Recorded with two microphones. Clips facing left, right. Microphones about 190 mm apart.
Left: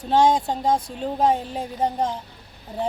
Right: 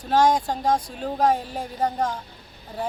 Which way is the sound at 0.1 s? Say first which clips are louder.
Left 1 dB; 25° left (ahead or behind).